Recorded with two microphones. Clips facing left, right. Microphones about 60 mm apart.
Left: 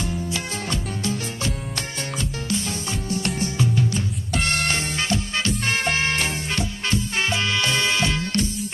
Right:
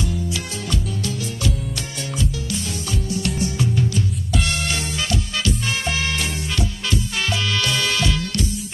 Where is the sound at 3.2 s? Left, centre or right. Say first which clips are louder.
Even; left.